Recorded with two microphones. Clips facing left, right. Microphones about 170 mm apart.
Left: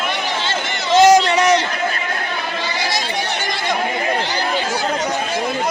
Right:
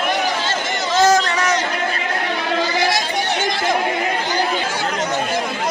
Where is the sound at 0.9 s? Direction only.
20° left (ahead or behind).